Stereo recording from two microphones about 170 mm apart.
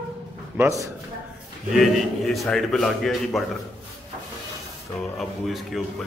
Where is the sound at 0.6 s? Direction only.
20° right (ahead or behind).